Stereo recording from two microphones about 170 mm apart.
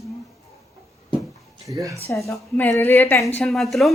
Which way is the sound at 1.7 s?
20° right (ahead or behind).